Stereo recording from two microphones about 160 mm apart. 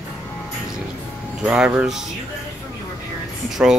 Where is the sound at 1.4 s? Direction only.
10° right (ahead or behind).